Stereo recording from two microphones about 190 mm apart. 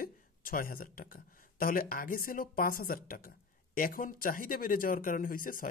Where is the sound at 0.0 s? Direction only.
50° left (ahead or behind).